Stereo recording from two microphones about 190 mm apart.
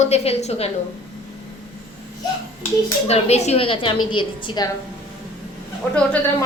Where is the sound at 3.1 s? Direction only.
35° left (ahead or behind).